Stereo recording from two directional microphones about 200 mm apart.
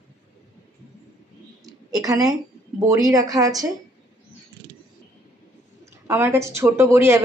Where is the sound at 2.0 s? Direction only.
15° right (ahead or behind).